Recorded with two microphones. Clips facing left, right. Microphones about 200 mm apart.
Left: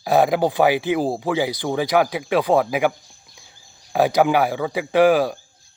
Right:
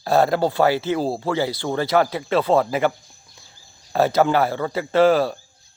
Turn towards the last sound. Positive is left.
turn(degrees=15)  # may be behind; listen again after turning